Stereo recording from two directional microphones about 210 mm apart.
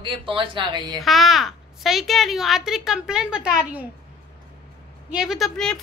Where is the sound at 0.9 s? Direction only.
Centre (ahead or behind).